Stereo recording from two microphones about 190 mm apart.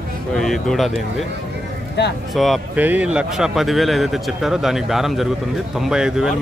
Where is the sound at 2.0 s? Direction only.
60° left (ahead or behind).